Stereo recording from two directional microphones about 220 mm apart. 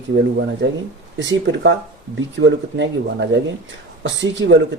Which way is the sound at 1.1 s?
55° right (ahead or behind).